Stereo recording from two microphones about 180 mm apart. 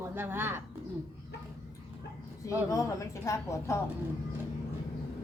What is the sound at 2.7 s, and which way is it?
A woman's voice, 20° left (ahead or behind).